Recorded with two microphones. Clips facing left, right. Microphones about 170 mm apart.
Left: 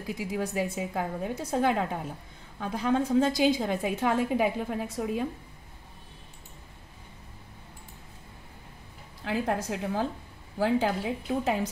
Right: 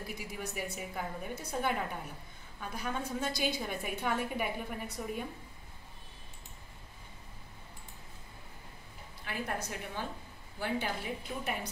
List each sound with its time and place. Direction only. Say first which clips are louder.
0.0 s a woman's voice: left 9 dB; 90° left
9.2 s a woman's voice: left 9 dB; 90° left